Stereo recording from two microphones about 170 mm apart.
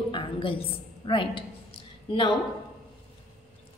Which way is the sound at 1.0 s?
30° left (ahead or behind).